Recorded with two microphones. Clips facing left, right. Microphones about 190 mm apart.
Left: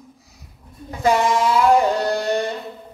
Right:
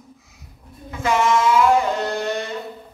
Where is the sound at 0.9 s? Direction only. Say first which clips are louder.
Left 1 dB; 35° left (ahead or behind).